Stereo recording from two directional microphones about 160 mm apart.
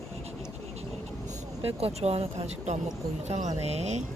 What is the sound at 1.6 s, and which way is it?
Speech, 40° right (ahead or behind).